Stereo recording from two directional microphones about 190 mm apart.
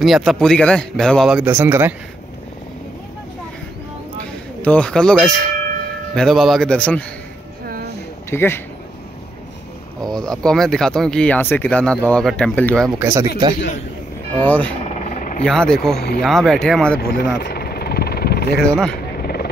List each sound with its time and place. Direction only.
0.0 s speech: centre (ahead or behind)
4.6 s speech: 5° left (ahead or behind)
7.6 s a sound: 55° right (ahead or behind)
8.3 s speech: 10° left (ahead or behind)
10.1 s speech: 5° left (ahead or behind)
13.0 s speech: 15° right (ahead or behind)
14.3 s speech: 10° left (ahead or behind)
14.8 s helicopter: 35° left (ahead or behind)
15.4 s speech: 5° left (ahead or behind)
17.1 s vehicle: 65° left (ahead or behind)